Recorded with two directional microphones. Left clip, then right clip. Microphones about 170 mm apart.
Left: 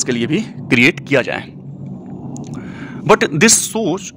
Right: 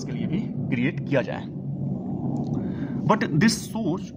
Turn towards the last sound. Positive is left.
turn(degrees=20)  # may be behind; listen again after turning